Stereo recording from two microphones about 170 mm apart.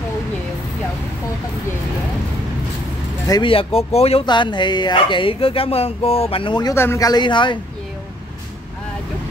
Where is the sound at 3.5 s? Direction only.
35° left (ahead or behind).